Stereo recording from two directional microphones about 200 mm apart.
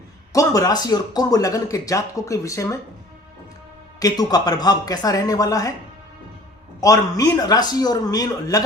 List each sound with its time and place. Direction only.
0.3 s speech: 15° left (ahead or behind)
4.0 s speech: 20° left (ahead or behind)
6.8 s a man's voice: 20° left (ahead or behind)